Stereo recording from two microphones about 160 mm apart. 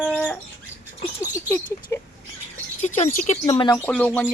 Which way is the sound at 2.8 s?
45° left (ahead or behind).